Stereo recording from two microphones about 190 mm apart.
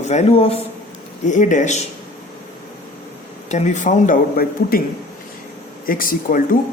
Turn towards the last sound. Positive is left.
turn(degrees=45)  # may be behind; listen again after turning